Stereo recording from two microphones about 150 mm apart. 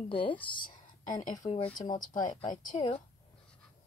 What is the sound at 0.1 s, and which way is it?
Speech, 35° left (ahead or behind).